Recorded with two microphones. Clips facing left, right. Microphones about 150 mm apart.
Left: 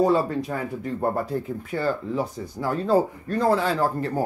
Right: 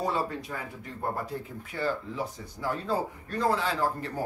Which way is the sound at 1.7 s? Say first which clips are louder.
Left 5 dB; 45° left (ahead or behind).